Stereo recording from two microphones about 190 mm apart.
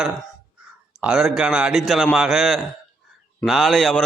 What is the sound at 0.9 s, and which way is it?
A man's voice, 5° right (ahead or behind).